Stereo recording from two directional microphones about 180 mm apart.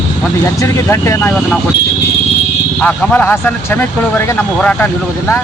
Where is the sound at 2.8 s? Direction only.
10° left (ahead or behind).